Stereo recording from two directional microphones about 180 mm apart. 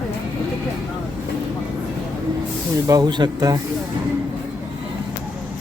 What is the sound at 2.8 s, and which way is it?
Speech, 20° right (ahead or behind).